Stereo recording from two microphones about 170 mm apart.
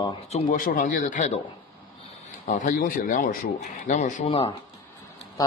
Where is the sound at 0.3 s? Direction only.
50° left (ahead or behind).